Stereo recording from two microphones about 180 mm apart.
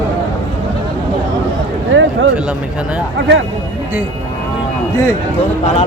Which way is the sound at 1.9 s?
90° right.